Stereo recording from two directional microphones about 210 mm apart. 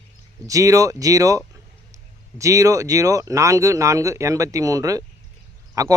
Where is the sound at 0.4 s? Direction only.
15° right (ahead or behind).